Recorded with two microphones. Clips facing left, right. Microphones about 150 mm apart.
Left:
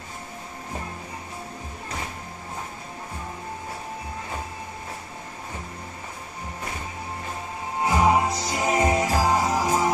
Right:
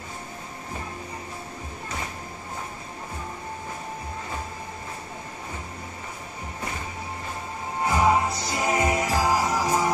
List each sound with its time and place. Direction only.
7.8 s music: 20° left (ahead or behind)